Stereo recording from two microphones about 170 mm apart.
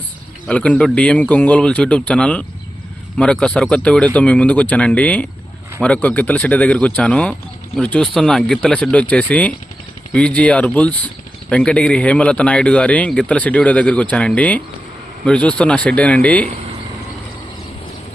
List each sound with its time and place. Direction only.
0.4 s speech: 5° left (ahead or behind)